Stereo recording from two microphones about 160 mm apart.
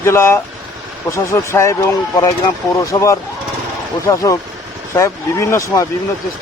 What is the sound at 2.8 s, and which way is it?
Speech, 20° left (ahead or behind).